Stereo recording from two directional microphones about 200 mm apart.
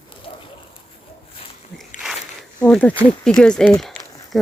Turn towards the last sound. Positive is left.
turn(degrees=5)  # may be behind; listen again after turning